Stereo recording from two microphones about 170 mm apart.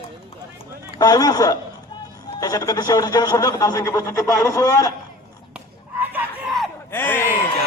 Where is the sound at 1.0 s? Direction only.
20° left (ahead or behind).